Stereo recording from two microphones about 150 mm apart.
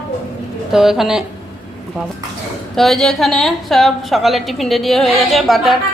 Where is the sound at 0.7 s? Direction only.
5° right (ahead or behind).